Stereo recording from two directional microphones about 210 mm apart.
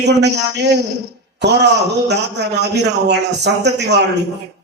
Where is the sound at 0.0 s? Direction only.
55° right (ahead or behind).